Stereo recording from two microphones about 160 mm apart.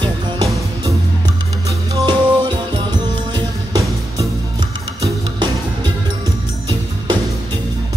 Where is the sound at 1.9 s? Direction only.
30° right (ahead or behind).